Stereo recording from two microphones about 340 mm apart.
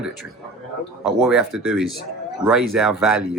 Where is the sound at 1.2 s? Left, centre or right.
Centre.